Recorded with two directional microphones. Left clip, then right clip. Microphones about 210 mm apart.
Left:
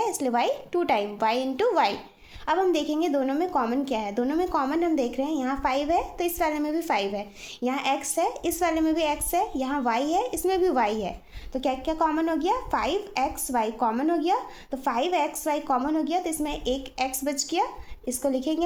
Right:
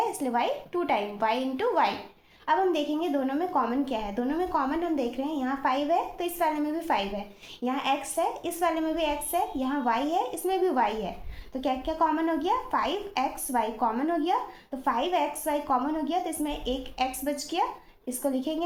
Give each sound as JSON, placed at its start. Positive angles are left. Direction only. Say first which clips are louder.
{"t": 0.0, "sound": "a woman's voice", "louder": "left 2 dB", "side_deg": 55}